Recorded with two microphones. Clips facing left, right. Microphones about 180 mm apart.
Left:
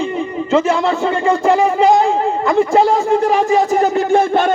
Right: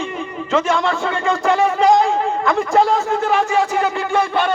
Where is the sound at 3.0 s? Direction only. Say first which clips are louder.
Left 5 dB; 35° left (ahead or behind).